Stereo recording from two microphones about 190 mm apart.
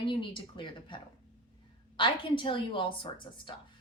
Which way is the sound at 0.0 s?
25° left (ahead or behind).